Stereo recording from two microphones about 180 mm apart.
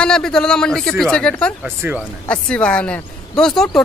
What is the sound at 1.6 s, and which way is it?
Speech, 10° right (ahead or behind).